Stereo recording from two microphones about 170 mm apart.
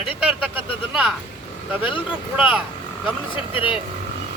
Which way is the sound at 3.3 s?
30° left (ahead or behind).